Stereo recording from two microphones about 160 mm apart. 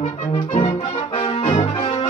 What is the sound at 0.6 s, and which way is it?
Brass instrument, 35° left (ahead or behind).